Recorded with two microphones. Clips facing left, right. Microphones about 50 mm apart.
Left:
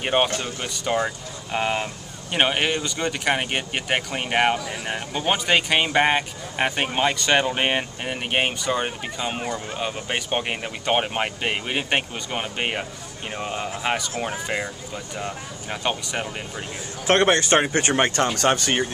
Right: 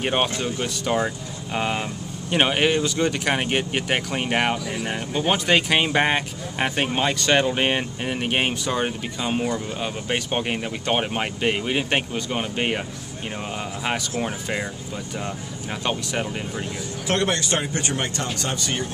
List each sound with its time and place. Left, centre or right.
0.0 s speech: centre
17.1 s speech: left